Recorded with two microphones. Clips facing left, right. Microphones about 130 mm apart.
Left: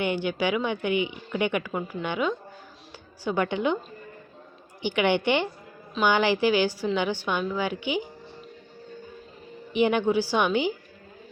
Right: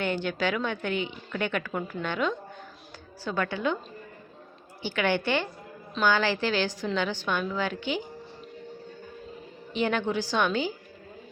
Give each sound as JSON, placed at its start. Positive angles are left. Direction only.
{"t": 0.0, "sound": "a woman's voice", "side_deg": 15}
{"t": 3.2, "sound": "a woman's voice", "side_deg": 20}
{"t": 4.8, "sound": "a woman's voice", "side_deg": 15}
{"t": 9.7, "sound": "a woman's voice", "side_deg": 15}